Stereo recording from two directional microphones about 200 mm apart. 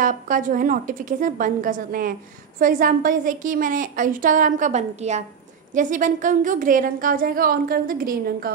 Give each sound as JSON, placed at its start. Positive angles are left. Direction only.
{"t": 0.0, "sound": "a woman's voice", "side_deg": -40}